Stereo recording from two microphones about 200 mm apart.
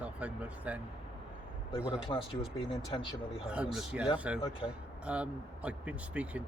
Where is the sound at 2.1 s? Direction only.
20° left (ahead or behind).